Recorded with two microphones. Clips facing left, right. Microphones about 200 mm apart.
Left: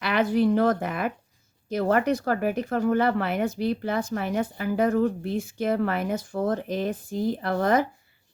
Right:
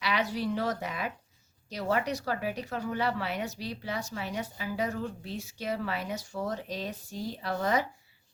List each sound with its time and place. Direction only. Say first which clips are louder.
0.0 s speech: left 9 dB; 55° left (ahead or behind)